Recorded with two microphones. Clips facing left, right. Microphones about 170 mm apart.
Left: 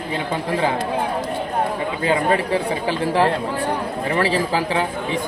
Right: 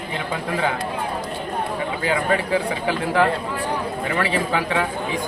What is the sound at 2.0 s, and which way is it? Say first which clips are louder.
Speech: left 3 dB; 30° left (ahead or behind).